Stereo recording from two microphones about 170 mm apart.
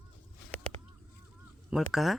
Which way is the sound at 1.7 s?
Centre (ahead or behind).